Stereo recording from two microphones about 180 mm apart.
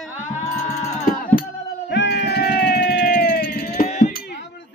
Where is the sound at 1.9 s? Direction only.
75° left (ahead or behind).